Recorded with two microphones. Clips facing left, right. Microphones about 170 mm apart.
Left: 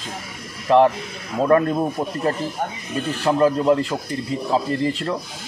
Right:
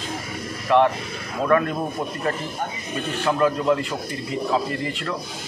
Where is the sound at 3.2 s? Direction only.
30° left (ahead or behind).